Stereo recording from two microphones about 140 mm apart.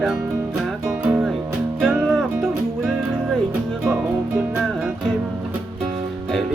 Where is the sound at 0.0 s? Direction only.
Centre (ahead or behind).